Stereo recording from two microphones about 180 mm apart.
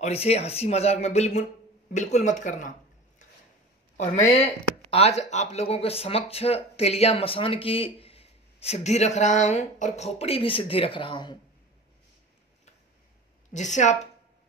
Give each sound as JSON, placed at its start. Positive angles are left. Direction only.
{"t": 0.0, "sound": "speech", "side_deg": 35}
{"t": 3.9, "sound": "speech", "side_deg": 40}
{"t": 13.5, "sound": "speech", "side_deg": 40}